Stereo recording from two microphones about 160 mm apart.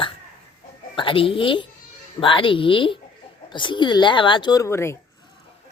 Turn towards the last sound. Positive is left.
turn(degrees=15)  # may be behind; listen again after turning